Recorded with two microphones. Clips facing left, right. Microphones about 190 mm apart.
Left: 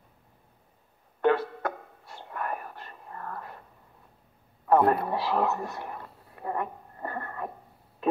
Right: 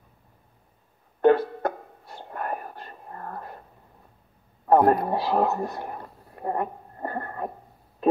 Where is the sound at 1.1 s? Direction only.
35° right (ahead or behind).